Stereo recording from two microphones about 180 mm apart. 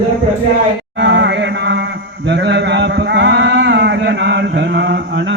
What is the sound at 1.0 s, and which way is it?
Chant, 75° right (ahead or behind).